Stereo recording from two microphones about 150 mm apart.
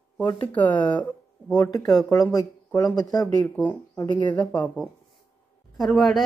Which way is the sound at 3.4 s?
10° left (ahead or behind).